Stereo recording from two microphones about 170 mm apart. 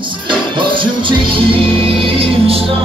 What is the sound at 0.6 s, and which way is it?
Music, 30° right (ahead or behind).